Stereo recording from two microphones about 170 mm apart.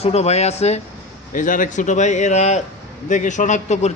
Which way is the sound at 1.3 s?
50° left (ahead or behind).